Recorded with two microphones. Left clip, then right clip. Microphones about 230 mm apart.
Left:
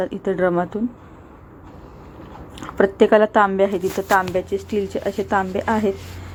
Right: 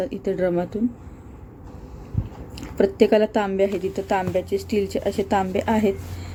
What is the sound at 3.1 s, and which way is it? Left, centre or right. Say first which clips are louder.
Speech: left 5 dB; left.